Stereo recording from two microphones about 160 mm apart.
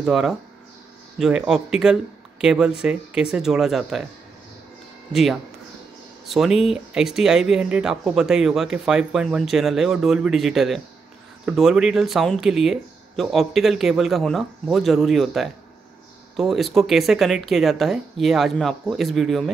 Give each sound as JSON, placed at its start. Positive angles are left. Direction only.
{"t": 0.0, "sound": "speech", "side_deg": -5}
{"t": 5.1, "sound": "speech", "side_deg": 0}